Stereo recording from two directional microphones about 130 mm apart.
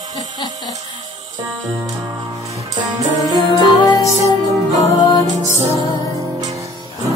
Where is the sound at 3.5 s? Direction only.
30° left (ahead or behind).